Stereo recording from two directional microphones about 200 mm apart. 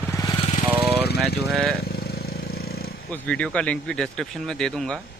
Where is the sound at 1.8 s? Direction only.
50° left (ahead or behind).